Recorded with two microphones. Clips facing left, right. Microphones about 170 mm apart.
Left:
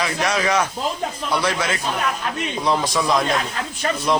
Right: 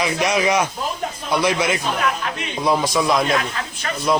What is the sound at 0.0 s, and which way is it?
A man's voice, 15° right (ahead or behind).